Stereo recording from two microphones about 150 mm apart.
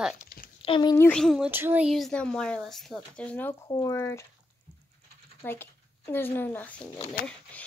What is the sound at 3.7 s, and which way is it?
Speech, 25° left (ahead or behind).